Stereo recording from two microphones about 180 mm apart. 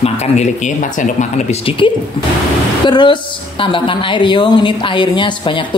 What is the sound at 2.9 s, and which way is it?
A woman's voice, 25° left (ahead or behind).